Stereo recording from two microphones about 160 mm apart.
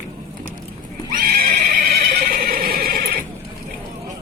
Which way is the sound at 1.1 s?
65° right (ahead or behind).